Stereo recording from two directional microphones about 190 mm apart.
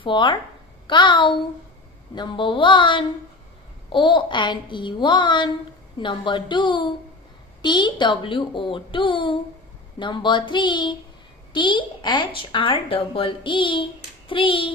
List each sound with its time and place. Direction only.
0.0 s speech: 25° left (ahead or behind)